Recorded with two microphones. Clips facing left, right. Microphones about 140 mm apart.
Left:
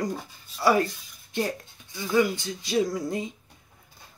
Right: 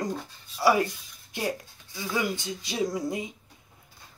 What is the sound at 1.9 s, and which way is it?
Speech, 15° right (ahead or behind).